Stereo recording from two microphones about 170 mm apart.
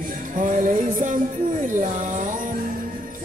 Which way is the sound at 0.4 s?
50° right (ahead or behind).